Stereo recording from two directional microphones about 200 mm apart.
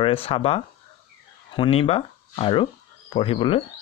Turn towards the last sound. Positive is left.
turn(degrees=25)  # may be behind; listen again after turning